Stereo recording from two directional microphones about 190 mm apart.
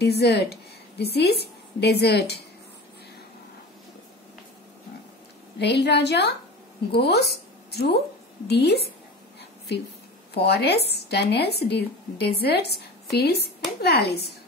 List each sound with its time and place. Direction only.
0.0 s a woman's voice: 60° left (ahead or behind)
5.6 s speech: 60° left (ahead or behind)
10.3 s speech: 60° left (ahead or behind)